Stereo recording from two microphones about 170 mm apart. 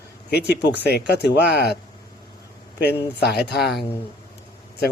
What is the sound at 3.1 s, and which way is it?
Speech, 70° left (ahead or behind).